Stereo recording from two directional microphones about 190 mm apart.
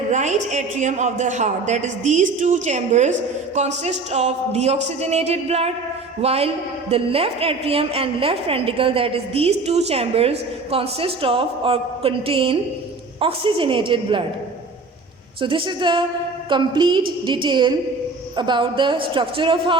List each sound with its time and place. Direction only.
0.1 s a woman's voice: 40° right (ahead or behind)
15.4 s a woman's voice: 25° right (ahead or behind)